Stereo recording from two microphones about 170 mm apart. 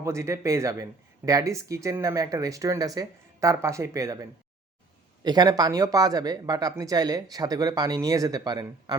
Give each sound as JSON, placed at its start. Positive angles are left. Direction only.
{"t": 0.0, "sound": "speech", "side_deg": -15}